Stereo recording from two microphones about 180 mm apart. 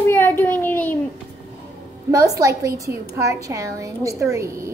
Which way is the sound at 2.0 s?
15° right (ahead or behind).